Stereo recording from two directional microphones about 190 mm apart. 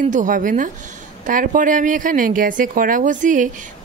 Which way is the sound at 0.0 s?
40° right (ahead or behind).